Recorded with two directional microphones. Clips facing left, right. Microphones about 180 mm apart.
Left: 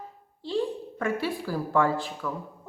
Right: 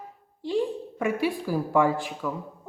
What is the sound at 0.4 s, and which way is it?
A woman's voice, 15° right (ahead or behind).